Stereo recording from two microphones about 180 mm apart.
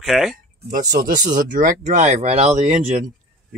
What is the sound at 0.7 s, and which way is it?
Speech, 50° right (ahead or behind).